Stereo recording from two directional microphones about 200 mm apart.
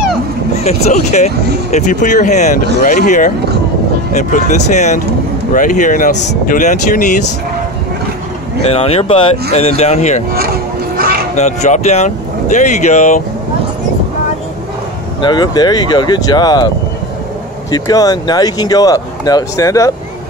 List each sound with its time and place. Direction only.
0.7 s speech: 35° left (ahead or behind)
8.6 s speech: 30° left (ahead or behind)
11.3 s speech: 35° left (ahead or behind)
15.2 s speech: 20° left (ahead or behind)
17.6 s speech: 20° left (ahead or behind)